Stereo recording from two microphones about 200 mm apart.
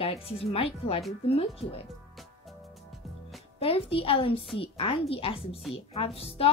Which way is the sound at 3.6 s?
30° left (ahead or behind).